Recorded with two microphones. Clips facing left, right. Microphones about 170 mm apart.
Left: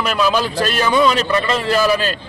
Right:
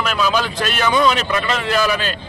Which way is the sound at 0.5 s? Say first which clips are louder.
Left 3 dB; 35° left (ahead or behind).